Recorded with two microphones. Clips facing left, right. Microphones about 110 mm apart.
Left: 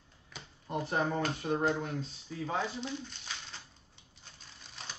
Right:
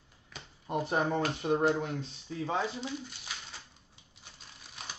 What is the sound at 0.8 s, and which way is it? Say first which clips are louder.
Speech: right 1 dB; 20° right (ahead or behind).